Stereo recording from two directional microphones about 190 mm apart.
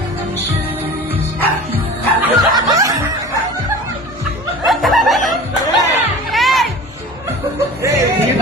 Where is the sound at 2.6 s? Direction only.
20° right (ahead or behind).